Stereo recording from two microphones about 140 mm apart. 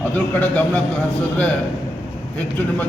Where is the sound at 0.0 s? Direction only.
10° left (ahead or behind).